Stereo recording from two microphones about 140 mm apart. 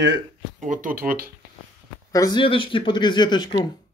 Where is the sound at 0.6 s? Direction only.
70° right (ahead or behind); by 1.3 s 90° right.